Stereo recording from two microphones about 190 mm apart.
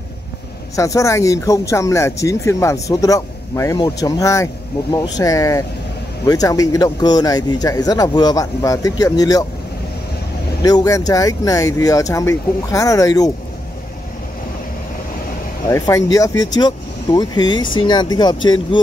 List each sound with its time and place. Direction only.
0.7 s speech: 15° left (ahead or behind)
10.6 s speech: 20° left (ahead or behind)
15.7 s speech: 20° left (ahead or behind)